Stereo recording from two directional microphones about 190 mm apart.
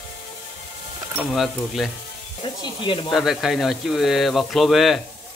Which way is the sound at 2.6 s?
25° left (ahead or behind).